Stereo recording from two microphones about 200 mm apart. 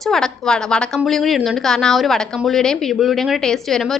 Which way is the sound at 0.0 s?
Centre (ahead or behind).